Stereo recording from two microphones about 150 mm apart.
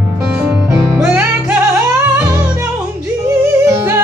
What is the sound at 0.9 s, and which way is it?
Music, 10° right (ahead or behind).